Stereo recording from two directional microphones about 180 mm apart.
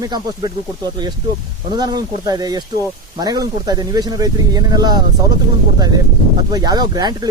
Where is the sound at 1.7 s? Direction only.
25° right (ahead or behind).